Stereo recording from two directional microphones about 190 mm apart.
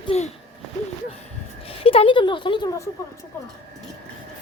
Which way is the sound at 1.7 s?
30° left (ahead or behind).